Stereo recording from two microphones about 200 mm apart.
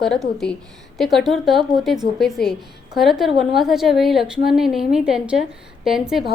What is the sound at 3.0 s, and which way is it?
A woman's voice, centre (ahead or behind).